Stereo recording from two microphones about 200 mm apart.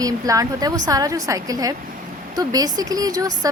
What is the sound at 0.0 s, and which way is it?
A woman's voice, 15° right (ahead or behind).